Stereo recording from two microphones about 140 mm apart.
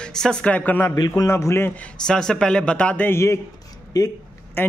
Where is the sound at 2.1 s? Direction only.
5° left (ahead or behind).